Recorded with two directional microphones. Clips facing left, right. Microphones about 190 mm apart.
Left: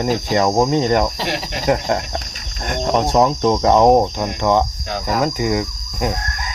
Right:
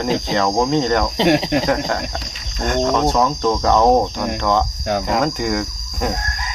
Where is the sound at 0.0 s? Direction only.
15° left (ahead or behind).